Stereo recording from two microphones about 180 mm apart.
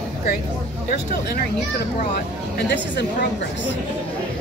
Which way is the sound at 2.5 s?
75° left (ahead or behind).